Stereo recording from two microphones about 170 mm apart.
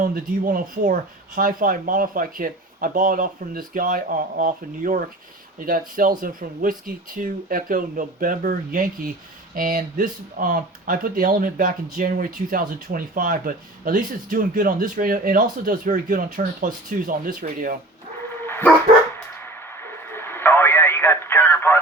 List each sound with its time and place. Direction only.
0.0 s speech: 55° right (ahead or behind)
18.4 s dog: 15° left (ahead or behind)
19.5 s radio: 15° left (ahead or behind)